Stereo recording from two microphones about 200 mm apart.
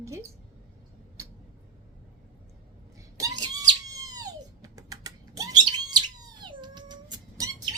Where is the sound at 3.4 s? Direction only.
20° right (ahead or behind).